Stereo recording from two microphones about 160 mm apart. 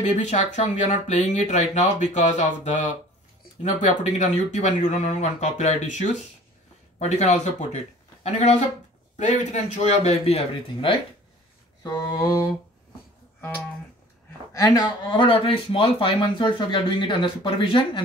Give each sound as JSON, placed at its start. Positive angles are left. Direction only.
{"t": 0.2, "sound": "speech", "side_deg": 45}
{"t": 11.8, "sound": "mantra", "side_deg": 25}
{"t": 14.5, "sound": "speech", "side_deg": 25}